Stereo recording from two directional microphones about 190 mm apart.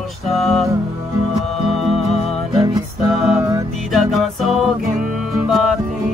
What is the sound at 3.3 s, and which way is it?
Music, 15° right (ahead or behind).